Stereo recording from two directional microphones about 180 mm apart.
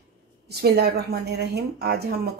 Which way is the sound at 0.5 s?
60° right (ahead or behind).